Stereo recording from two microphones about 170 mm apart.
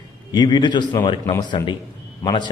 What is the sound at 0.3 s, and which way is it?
A man's voice, 25° left (ahead or behind).